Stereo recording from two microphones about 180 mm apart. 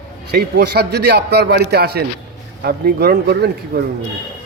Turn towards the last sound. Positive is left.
turn(degrees=-65)  # may be behind; listen again after turning